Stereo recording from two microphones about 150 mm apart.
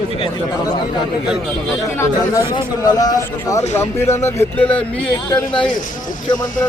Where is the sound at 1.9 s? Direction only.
20° left (ahead or behind).